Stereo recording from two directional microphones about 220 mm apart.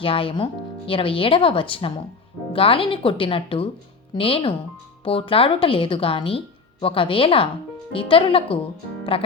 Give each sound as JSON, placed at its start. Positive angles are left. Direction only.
{"t": 0.0, "sound": "a woman's voice", "side_deg": 25}